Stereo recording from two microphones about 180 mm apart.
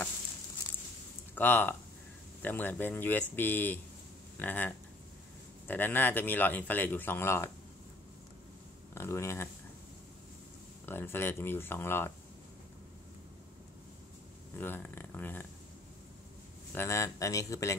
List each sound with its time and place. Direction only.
1.3 s speech: 10° left (ahead or behind)
8.9 s speech: 15° left (ahead or behind)
10.9 s speech: 10° left (ahead or behind)
14.6 s a sound: 10° left (ahead or behind)
16.7 s speech: 15° left (ahead or behind)